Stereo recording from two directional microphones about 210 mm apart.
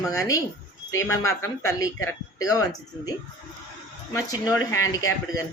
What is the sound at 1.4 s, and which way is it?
Speech, 15° left (ahead or behind).